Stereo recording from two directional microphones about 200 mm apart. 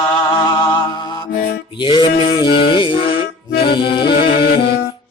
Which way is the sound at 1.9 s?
25° left (ahead or behind).